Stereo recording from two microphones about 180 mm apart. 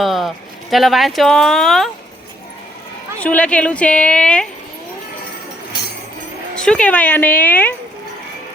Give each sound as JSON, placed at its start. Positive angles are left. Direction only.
{"t": 0.0, "sound": "speech", "side_deg": 0}
{"t": 3.2, "sound": "a woman's voice", "side_deg": 5}
{"t": 6.6, "sound": "a woman's voice", "side_deg": 5}